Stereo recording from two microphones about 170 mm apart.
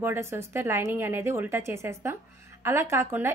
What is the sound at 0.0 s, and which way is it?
Speech, 15° right (ahead or behind).